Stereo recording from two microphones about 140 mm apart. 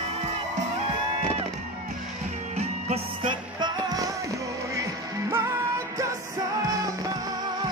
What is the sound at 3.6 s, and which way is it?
Music, 25° right (ahead or behind).